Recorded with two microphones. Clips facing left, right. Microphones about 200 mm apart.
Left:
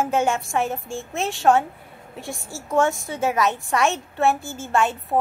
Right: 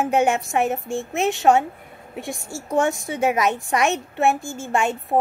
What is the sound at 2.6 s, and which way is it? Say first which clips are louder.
A woman's voice: even; 15° right (ahead or behind).